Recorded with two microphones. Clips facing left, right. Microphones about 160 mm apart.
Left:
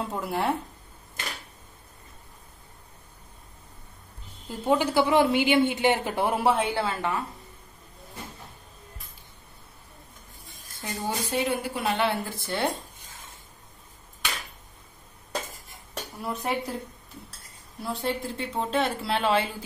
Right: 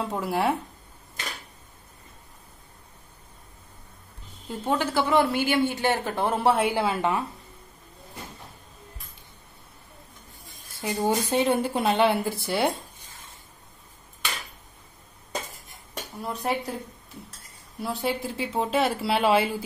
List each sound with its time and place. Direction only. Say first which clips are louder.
0.1 s speech: right 3 dB; centre (ahead or behind)
4.5 s a woman's voice: left 2 dB; 10° left (ahead or behind)
6.4 s speech: right 5 dB; 5° right (ahead or behind)
10.8 s speech: right 7 dB; 15° right (ahead or behind)
11.3 s a woman's voice: right 2 dB; 25° right (ahead or behind); by 12.6 s 10° right (ahead or behind)
16.3 s speech: right 1 dB; centre (ahead or behind)
17.7 s speech: right 2 dB; 5° right (ahead or behind)